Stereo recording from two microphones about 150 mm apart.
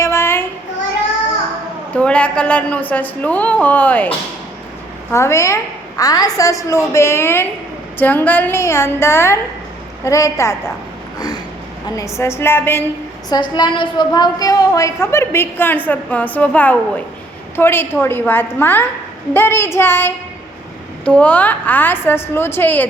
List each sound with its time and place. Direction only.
0.0 s child singing: 15° left (ahead or behind)
2.0 s a woman's voice: 10° left (ahead or behind)
5.1 s a woman's voice: 20° left (ahead or behind)
11.9 s a woman's voice: 20° left (ahead or behind)
13.3 s a woman's voice: 30° left (ahead or behind); by 22.9 s 15° left (ahead or behind)